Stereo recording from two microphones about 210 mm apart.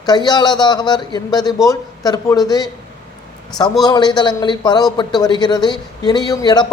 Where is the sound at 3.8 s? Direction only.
20° left (ahead or behind).